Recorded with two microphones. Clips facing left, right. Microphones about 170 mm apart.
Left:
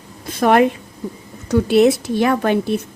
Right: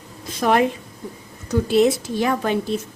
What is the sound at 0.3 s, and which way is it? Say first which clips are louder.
A woman's voice: left 4 dB; 60° left (ahead or behind).